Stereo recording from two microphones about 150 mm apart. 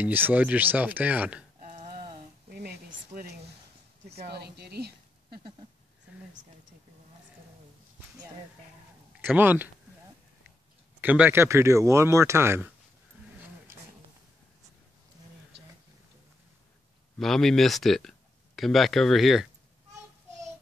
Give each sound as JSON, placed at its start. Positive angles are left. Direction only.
{"t": 0.0, "sound": "speech", "side_deg": -10}
{"t": 1.6, "sound": "a sound", "side_deg": -55}
{"t": 2.5, "sound": "a sound", "side_deg": -90}
{"t": 4.3, "sound": "speech", "side_deg": -90}
{"t": 9.2, "sound": "speech", "side_deg": -15}
{"t": 11.0, "sound": "speech", "side_deg": -10}
{"t": 17.2, "sound": "speech", "side_deg": 0}